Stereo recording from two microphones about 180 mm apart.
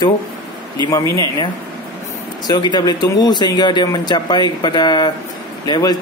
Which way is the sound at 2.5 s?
25° left (ahead or behind).